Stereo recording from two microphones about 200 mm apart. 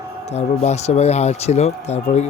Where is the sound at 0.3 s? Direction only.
35° left (ahead or behind).